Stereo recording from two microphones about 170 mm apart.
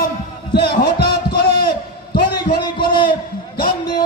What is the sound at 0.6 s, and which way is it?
A man's voice, 65° left (ahead or behind).